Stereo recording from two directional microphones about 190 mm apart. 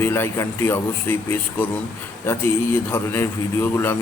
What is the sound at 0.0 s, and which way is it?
Speech, 15° left (ahead or behind).